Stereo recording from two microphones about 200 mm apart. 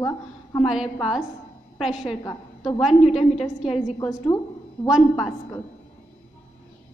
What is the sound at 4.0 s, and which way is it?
Speech, 15° left (ahead or behind).